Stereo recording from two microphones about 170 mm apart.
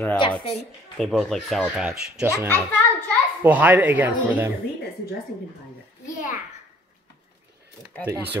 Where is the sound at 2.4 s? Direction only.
10° left (ahead or behind).